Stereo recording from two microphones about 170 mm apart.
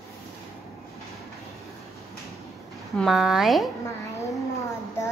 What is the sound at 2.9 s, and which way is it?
Speech, centre (ahead or behind).